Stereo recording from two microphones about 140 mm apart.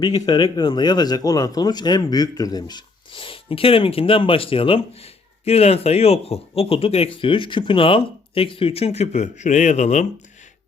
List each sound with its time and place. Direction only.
0.0 s speech: 30° left (ahead or behind); by 10.1 s 55° left (ahead or behind)